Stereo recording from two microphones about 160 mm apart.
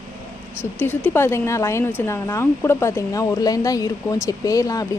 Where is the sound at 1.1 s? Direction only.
15° left (ahead or behind).